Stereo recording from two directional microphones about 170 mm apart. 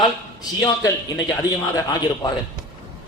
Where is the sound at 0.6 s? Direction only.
20° left (ahead or behind).